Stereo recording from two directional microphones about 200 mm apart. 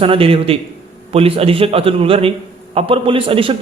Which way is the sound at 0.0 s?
25° right (ahead or behind).